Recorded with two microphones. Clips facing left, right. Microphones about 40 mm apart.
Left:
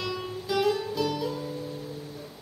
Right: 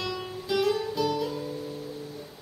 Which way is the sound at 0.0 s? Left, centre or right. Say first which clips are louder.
Left 1 dB; centre.